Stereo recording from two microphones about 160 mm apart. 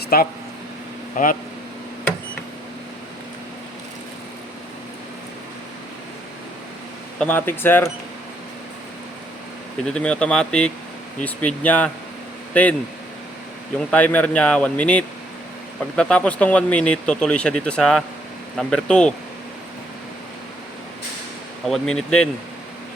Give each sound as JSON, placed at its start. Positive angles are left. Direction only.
{"t": 0.1, "sound": "speech", "side_deg": 70}
{"t": 1.1, "sound": "speech", "side_deg": 55}
{"t": 7.2, "sound": "speech", "side_deg": 10}
{"t": 9.8, "sound": "speech", "side_deg": 5}
{"t": 13.9, "sound": "speech", "side_deg": 10}
{"t": 21.7, "sound": "speech", "side_deg": 5}